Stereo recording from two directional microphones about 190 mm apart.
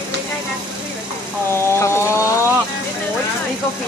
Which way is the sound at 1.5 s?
15° left (ahead or behind).